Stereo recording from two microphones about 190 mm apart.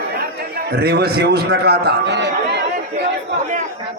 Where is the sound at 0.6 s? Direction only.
55° right (ahead or behind).